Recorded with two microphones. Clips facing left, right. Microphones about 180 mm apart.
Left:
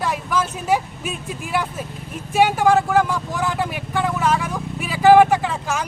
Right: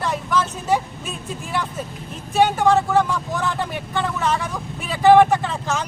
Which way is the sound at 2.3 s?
10° left (ahead or behind).